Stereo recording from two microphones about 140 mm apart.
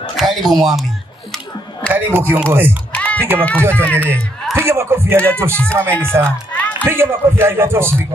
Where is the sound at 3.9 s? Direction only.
15° right (ahead or behind).